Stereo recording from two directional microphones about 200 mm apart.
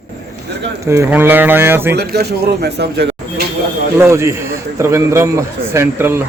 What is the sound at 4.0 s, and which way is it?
Speech, 15° right (ahead or behind).